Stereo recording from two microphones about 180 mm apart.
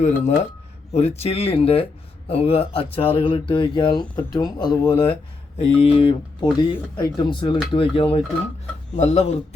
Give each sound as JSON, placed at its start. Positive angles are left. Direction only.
{"t": 0.0, "sound": "speech", "side_deg": 40}